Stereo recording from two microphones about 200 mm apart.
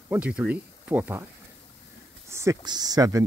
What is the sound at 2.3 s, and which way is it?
Speech, 15° right (ahead or behind).